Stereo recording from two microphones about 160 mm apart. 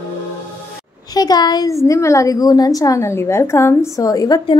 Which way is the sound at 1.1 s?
25° left (ahead or behind).